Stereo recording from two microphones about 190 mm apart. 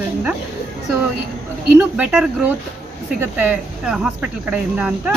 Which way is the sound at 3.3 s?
5° right (ahead or behind).